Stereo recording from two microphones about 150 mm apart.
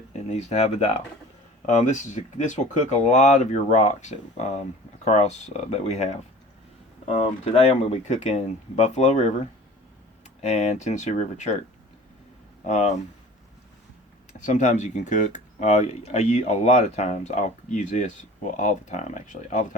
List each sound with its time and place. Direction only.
0.1 s speech: 50° left (ahead or behind)
12.6 s speech: 50° left (ahead or behind)
14.3 s speech: 55° left (ahead or behind)